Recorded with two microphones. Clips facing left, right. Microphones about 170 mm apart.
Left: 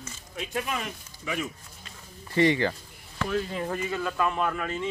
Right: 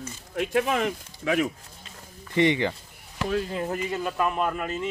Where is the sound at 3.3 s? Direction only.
30° right (ahead or behind); by 4.6 s 15° right (ahead or behind).